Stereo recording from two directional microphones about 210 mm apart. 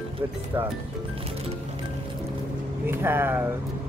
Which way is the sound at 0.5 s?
10° right (ahead or behind).